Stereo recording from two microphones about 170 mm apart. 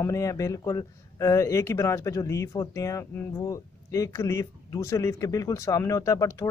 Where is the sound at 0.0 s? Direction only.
15° left (ahead or behind).